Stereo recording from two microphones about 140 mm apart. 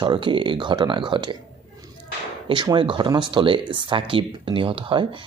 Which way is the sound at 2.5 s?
35° right (ahead or behind).